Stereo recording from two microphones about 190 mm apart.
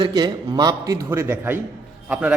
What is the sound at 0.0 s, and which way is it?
A man's voice, 20° right (ahead or behind).